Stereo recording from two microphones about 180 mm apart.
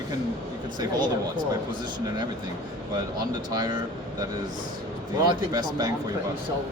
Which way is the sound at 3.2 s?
20° right (ahead or behind).